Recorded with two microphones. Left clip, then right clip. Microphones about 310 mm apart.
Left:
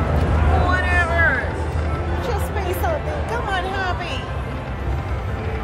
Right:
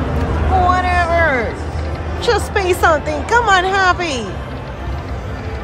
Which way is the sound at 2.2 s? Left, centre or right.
Right.